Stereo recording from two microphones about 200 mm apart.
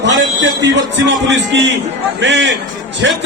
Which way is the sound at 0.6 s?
65° right (ahead or behind).